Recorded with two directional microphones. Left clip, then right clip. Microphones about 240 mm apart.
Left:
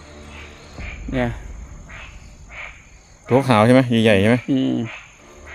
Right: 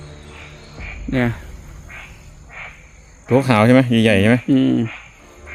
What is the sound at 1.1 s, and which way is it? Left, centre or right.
Speech, right.